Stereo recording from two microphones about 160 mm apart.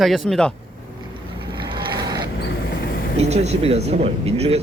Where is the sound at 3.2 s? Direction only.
45° right (ahead or behind).